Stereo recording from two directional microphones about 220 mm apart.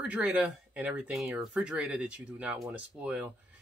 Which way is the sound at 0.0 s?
5° right (ahead or behind).